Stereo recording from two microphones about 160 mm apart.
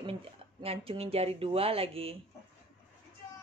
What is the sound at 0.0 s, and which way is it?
Speech, 35° right (ahead or behind).